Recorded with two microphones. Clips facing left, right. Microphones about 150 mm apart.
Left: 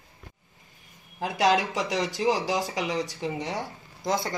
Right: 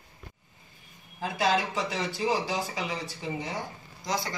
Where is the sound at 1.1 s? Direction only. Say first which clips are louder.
Left 3 dB; 80° left.